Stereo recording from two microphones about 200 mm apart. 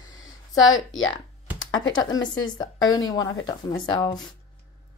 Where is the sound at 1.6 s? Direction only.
20° left (ahead or behind).